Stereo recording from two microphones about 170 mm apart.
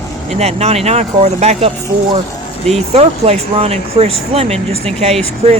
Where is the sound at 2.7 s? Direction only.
40° right (ahead or behind).